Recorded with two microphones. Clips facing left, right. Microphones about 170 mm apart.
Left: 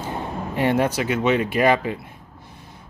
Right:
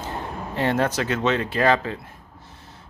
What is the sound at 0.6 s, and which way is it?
Speech, 10° left (ahead or behind).